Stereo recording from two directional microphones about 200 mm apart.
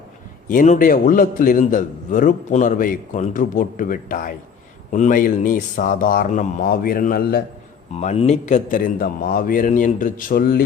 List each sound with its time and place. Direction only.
0.4 s a man's voice: 40° left (ahead or behind)
7.9 s a man's voice: 30° left (ahead or behind); by 10.6 s 45° left (ahead or behind)